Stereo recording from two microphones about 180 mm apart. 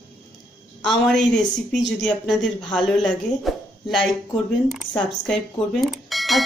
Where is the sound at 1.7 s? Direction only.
5° left (ahead or behind).